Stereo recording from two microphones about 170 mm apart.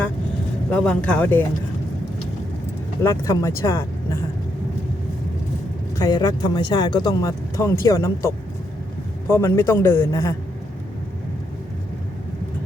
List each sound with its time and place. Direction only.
0.7 s a man's voice: 5° left (ahead or behind)
3.0 s speech: 20° left (ahead or behind)
6.0 s speech: 20° left (ahead or behind)
9.3 s a man's voice: 15° left (ahead or behind)